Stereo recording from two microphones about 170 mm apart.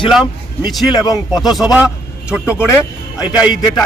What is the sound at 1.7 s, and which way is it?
Speech, 5° right (ahead or behind).